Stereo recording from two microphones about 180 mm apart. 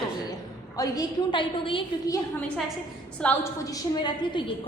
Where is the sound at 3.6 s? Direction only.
20° left (ahead or behind).